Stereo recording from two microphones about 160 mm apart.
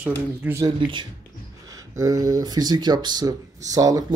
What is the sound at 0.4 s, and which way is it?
A man's voice, 15° right (ahead or behind).